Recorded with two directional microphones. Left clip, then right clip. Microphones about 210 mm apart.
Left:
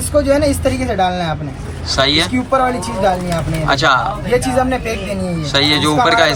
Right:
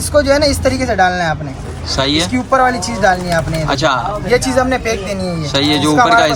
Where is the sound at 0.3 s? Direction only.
15° right (ahead or behind).